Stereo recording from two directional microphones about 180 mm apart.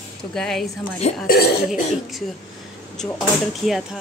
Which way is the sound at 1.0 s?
35° left (ahead or behind).